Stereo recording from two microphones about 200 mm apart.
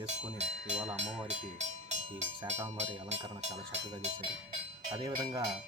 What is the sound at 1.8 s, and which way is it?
Speech, 35° right (ahead or behind).